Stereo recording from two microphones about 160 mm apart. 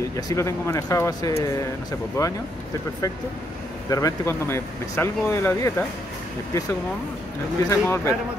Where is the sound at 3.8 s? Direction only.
20° left (ahead or behind).